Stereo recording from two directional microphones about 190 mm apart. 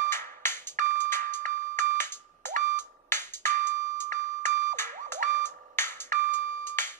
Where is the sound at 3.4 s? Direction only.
40° right (ahead or behind).